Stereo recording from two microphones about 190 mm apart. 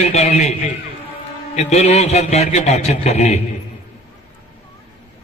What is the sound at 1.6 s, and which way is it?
A man's voice, 35° left (ahead or behind).